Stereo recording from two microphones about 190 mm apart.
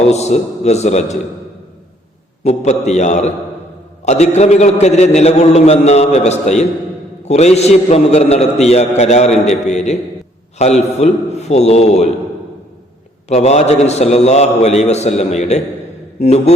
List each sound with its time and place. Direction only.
0.1 s a man's voice: 35° left (ahead or behind)
2.4 s a man's voice: 35° left (ahead or behind)
13.2 s a man's voice: 35° left (ahead or behind)